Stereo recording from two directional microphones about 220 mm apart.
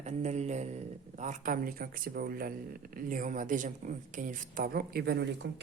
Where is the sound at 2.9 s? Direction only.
40° right (ahead or behind).